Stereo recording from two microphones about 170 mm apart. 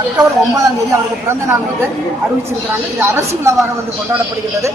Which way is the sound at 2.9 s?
15° right (ahead or behind).